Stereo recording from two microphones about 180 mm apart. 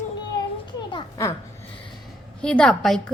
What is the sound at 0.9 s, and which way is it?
Children playing, 20° left (ahead or behind).